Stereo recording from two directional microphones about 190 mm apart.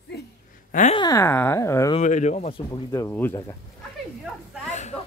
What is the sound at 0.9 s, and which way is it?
Speech, 20° left (ahead or behind).